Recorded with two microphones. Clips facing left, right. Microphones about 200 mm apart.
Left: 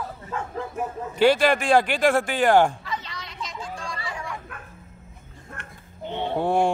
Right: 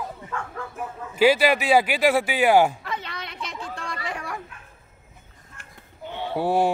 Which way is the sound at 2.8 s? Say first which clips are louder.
Right 1 dB; 55° right (ahead or behind).